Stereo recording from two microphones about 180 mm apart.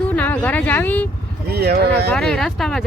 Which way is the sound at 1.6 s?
60° right (ahead or behind).